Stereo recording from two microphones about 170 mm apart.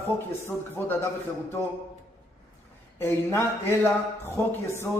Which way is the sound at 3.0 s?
15° left (ahead or behind).